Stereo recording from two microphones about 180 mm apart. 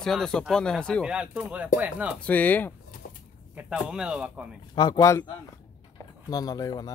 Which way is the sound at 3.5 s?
5° right (ahead or behind).